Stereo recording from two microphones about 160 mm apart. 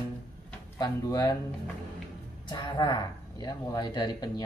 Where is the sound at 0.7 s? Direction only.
25° left (ahead or behind).